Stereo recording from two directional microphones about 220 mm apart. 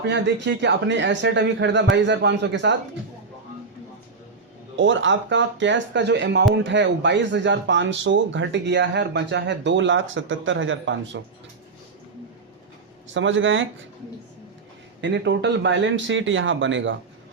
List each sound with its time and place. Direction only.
0.0 s speech: 55° right (ahead or behind)
4.8 s speech: 60° right (ahead or behind)
13.1 s speech: 60° right (ahead or behind)
15.0 s speech: 55° right (ahead or behind)